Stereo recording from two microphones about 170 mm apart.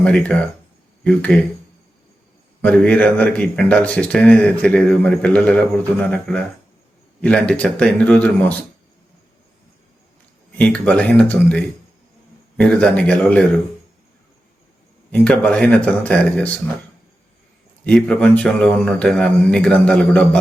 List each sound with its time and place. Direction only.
0.0 s a man's voice: 5° left (ahead or behind)
2.6 s a man's voice: 5° left (ahead or behind)
10.6 s a man's voice: 5° left (ahead or behind)
15.1 s a man's voice: 5° left (ahead or behind)
17.8 s a man's voice: 5° left (ahead or behind)